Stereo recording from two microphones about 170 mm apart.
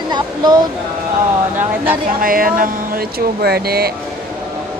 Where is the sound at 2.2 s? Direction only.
55° right (ahead or behind).